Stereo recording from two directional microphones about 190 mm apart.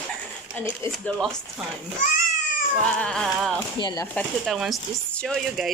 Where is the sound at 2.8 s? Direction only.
5° left (ahead or behind).